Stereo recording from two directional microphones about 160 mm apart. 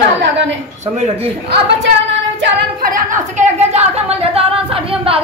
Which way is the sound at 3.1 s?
45° right (ahead or behind).